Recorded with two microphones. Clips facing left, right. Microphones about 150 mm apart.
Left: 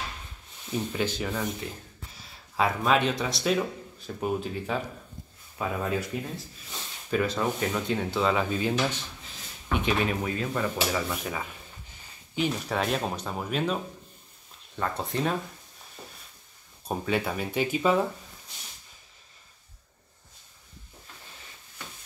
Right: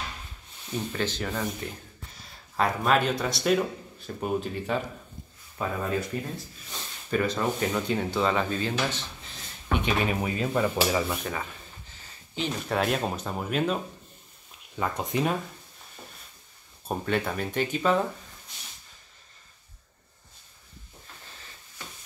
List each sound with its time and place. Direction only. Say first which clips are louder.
0.9 s speech: even; 10° left (ahead or behind)
2.5 s speech: even; centre (ahead or behind)
10.2 s speech: right 3 dB; 15° right (ahead or behind)
12.4 s speech: even; centre (ahead or behind)
14.8 s speech: right 2 dB; 10° right (ahead or behind)
16.8 s speech: even; centre (ahead or behind)